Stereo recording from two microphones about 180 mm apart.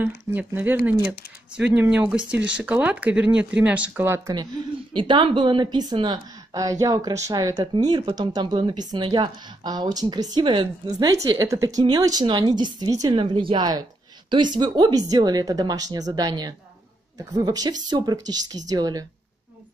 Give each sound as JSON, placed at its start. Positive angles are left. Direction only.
{"t": 0.0, "sound": "a woman's voice", "side_deg": -10}